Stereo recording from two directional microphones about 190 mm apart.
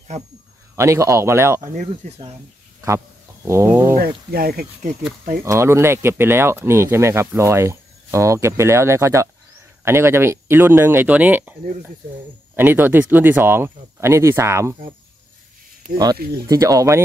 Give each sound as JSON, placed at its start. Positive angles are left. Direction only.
{"t": 0.7, "sound": "speech", "side_deg": -15}
{"t": 1.7, "sound": "speech", "side_deg": -35}
{"t": 3.4, "sound": "speech", "side_deg": -15}
{"t": 4.3, "sound": "speech", "side_deg": -50}
{"t": 5.4, "sound": "speech", "side_deg": -15}
{"t": 12.5, "sound": "speech", "side_deg": -10}
{"t": 16.4, "sound": "speech", "side_deg": -15}